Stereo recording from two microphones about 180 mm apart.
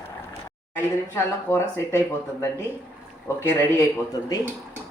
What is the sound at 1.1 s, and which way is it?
Speech, 15° left (ahead or behind).